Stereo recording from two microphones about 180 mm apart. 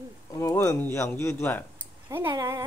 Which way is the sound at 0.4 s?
20° left (ahead or behind).